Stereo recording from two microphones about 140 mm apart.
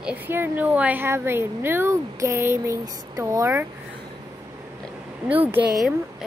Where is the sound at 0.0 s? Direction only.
15° right (ahead or behind).